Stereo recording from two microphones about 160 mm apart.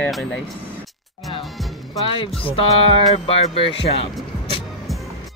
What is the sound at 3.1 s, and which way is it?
Speech, 35° left (ahead or behind).